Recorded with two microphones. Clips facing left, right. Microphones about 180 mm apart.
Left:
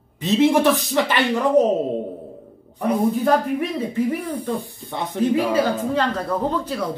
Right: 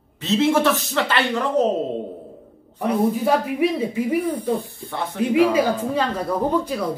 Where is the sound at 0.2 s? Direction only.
15° left (ahead or behind).